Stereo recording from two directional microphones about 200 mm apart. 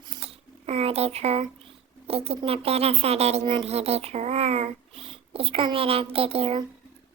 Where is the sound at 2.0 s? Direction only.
30° right (ahead or behind).